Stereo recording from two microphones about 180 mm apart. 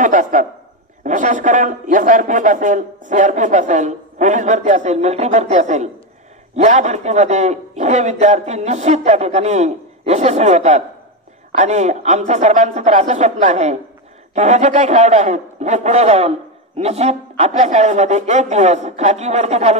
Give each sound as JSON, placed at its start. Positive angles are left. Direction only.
{"t": 0.0, "sound": "a man's voice", "side_deg": -45}